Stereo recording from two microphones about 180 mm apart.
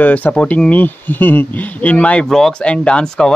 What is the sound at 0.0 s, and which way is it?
Speech, 10° left (ahead or behind).